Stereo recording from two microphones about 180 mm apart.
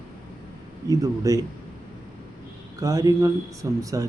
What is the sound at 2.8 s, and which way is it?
Speech, 20° right (ahead or behind).